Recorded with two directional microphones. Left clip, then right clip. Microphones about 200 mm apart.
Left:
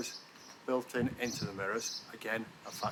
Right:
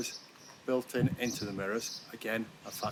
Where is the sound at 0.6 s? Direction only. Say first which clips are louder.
Right 2 dB; 15° left (ahead or behind).